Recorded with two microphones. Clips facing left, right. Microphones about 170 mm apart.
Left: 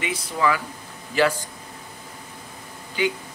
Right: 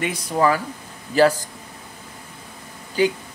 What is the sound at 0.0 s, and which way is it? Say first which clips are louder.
A man's voice: right 4 dB; 40° right (ahead or behind).